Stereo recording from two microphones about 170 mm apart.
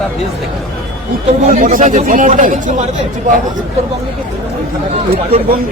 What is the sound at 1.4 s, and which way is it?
Speech, 55° right (ahead or behind).